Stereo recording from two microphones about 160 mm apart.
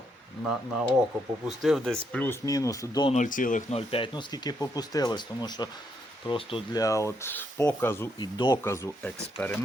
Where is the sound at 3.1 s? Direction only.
50° left (ahead or behind).